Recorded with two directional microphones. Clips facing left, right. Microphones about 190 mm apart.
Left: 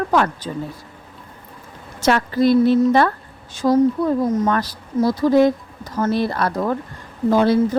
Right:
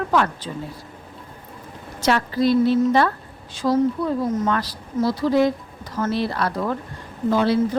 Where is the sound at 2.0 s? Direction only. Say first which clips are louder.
Left 3 dB; 50° left (ahead or behind).